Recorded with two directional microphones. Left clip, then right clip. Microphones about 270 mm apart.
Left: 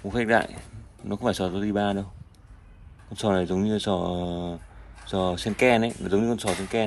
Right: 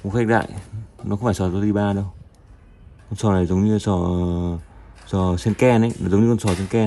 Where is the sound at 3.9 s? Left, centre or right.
Left.